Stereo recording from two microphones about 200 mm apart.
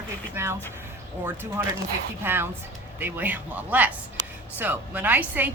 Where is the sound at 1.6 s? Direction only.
10° right (ahead or behind).